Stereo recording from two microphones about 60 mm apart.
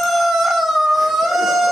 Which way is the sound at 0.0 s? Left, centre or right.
Centre.